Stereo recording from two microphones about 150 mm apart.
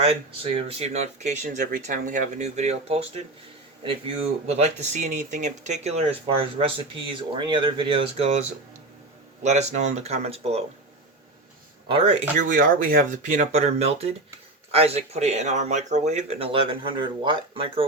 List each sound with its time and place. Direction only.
0.0 s speech: 40° right (ahead or behind)
4.4 s speech: 45° right (ahead or behind)
11.9 s speech: 35° right (ahead or behind)
12.4 s speech: 65° right (ahead or behind); by 17.8 s 35° right (ahead or behind)